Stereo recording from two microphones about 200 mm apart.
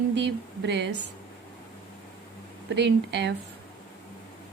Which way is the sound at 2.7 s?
60° right (ahead or behind).